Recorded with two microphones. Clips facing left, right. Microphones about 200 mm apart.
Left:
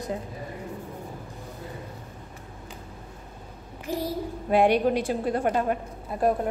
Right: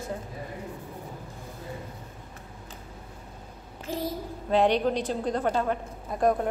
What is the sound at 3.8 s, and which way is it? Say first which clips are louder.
A woman's voice: left 3 dB; 15° left (ahead or behind).